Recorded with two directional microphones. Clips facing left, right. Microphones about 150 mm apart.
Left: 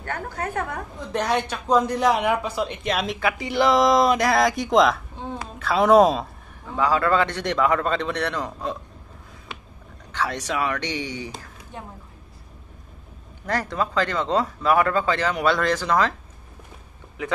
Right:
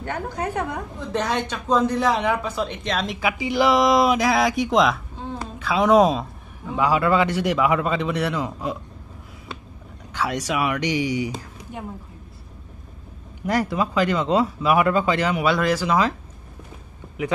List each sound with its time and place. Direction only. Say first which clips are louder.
0.0 s speech: right 2 dB; 15° right (ahead or behind)
1.1 s speech: left 1 dB; 10° left (ahead or behind)
3.2 s speech: right 3 dB; 5° right (ahead or behind)
6.7 s speech: right 1 dB; 10° right (ahead or behind)
10.1 s speech: right 2 dB; 10° right (ahead or behind)
13.5 s speech: right 3 dB; 15° right (ahead or behind)